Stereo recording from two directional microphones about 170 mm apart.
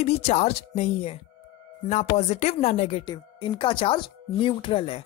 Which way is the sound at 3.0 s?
25° left (ahead or behind).